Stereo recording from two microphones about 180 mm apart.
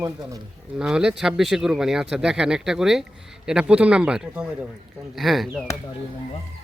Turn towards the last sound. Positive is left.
turn(degrees=0)  # may be behind; listen again after turning